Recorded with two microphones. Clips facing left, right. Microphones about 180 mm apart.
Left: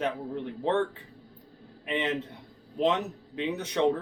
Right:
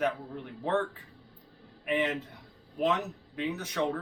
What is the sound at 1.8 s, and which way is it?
A man's voice, 25° left (ahead or behind).